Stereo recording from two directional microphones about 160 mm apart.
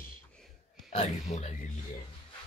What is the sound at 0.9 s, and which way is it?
Speech, 45° left (ahead or behind).